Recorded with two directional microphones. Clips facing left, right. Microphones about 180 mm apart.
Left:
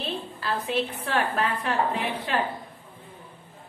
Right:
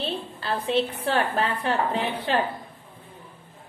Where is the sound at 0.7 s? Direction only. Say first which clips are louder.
Right 7 dB; 30° right (ahead or behind).